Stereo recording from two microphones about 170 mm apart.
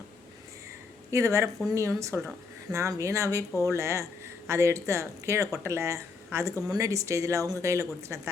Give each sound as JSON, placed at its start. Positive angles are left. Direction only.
{"t": 1.1, "sound": "speech", "side_deg": -15}